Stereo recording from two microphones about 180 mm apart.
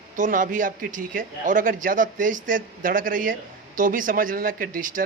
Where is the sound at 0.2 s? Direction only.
50° right (ahead or behind).